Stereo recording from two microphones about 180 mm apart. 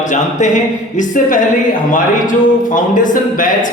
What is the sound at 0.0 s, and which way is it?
A man's voice, 45° left (ahead or behind).